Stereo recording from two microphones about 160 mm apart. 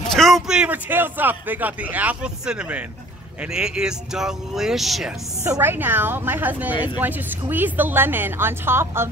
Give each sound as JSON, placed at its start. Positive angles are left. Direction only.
{"t": 0.1, "sound": "a man's voice", "side_deg": 0}
{"t": 5.4, "sound": "speech", "side_deg": -15}